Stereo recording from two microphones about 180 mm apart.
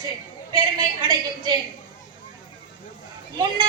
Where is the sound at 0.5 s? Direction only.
25° right (ahead or behind).